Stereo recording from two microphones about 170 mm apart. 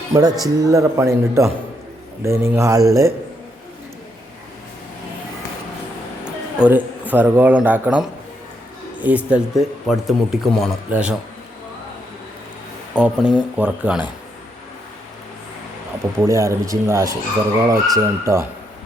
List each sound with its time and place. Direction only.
0.1 s a man's voice: 20° right (ahead or behind)
6.2 s speech: 10° right (ahead or behind)
12.9 s speech: 5° right (ahead or behind)
16.2 s a man's voice: 15° right (ahead or behind)